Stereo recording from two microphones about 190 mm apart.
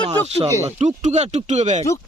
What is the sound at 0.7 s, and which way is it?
Speech, 35° right (ahead or behind).